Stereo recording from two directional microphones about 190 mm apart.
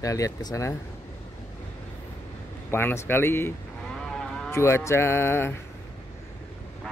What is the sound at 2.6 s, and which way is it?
Speech, 10° left (ahead or behind).